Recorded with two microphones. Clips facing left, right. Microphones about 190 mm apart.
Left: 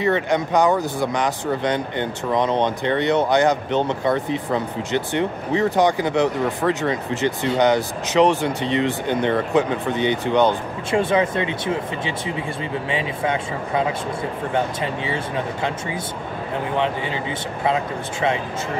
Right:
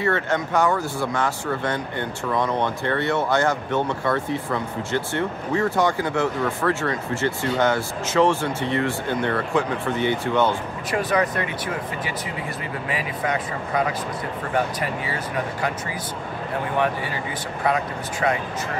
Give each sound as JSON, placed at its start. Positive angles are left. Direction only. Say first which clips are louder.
{"t": 0.0, "sound": "speech", "louder": "left 3 dB", "side_deg": 15}